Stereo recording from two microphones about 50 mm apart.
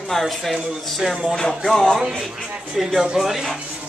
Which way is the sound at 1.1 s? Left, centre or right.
Centre.